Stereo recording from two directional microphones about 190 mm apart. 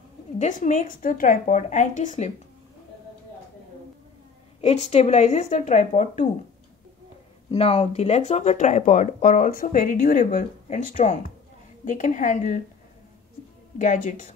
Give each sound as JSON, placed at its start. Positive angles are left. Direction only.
{"t": 0.4, "sound": "speech", "side_deg": 40}
{"t": 4.6, "sound": "speech", "side_deg": 35}
{"t": 7.5, "sound": "a woman's voice", "side_deg": 30}
{"t": 13.7, "sound": "speech", "side_deg": 40}